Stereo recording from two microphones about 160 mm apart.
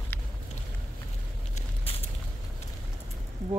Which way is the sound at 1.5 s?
40° left (ahead or behind).